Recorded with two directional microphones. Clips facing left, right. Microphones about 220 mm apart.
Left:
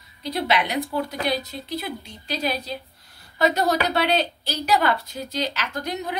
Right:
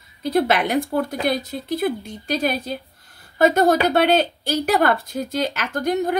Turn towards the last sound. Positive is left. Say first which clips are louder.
# right 8 dB
turn(degrees=-50)  # may be behind; listen again after turning